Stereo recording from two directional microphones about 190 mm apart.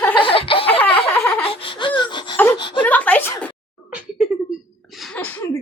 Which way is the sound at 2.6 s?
25° left (ahead or behind).